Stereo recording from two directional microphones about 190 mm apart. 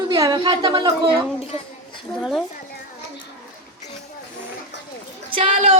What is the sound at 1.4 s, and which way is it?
Speech, 30° left (ahead or behind).